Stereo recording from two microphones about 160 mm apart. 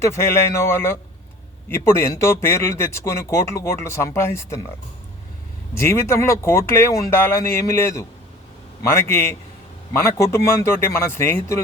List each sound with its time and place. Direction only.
0.0 s a man's voice: 15° left (ahead or behind)
5.7 s a man's voice: 15° left (ahead or behind)